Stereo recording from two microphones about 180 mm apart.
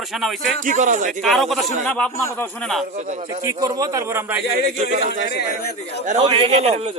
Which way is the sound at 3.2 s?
20° right (ahead or behind).